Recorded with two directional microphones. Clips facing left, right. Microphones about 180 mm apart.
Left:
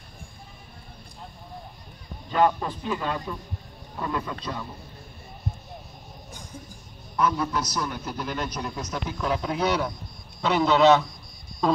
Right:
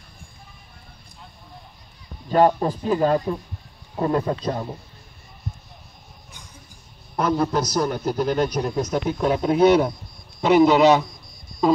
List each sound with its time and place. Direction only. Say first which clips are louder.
2.3 s a man's voice: right 5 dB; 40° right (ahead or behind)
7.2 s a man's voice: right 4 dB; 40° right (ahead or behind); by 11.1 s 15° right (ahead or behind)
11.6 s a sound: right 5 dB; 5° right (ahead or behind)